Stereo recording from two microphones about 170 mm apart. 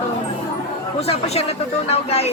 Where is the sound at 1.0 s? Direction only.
35° left (ahead or behind).